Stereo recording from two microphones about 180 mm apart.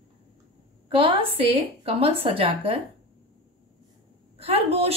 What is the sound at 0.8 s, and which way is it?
A woman's voice, 30° right (ahead or behind).